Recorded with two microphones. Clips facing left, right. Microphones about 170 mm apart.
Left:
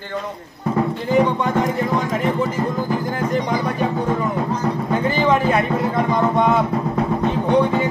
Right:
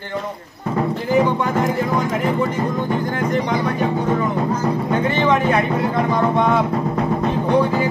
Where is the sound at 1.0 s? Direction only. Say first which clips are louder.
Even; 5° right (ahead or behind).